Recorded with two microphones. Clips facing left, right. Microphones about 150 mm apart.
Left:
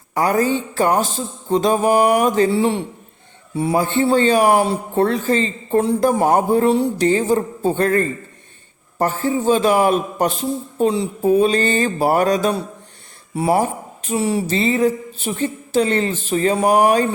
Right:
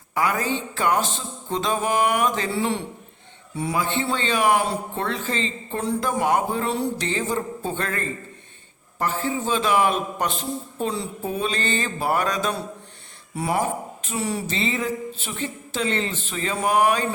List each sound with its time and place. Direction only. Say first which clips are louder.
0.1 s a man's voice: left 6 dB; 40° left (ahead or behind)
14.5 s a man's voice: left 8 dB; 40° left (ahead or behind)